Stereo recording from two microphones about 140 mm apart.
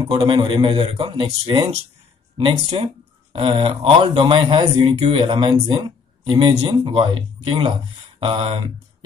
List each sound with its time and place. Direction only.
0.2 s speech: 35° right (ahead or behind)